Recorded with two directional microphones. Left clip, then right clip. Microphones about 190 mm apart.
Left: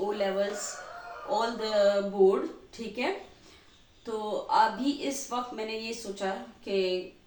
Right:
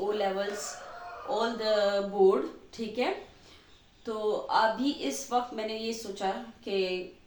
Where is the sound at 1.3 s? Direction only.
20° right (ahead or behind).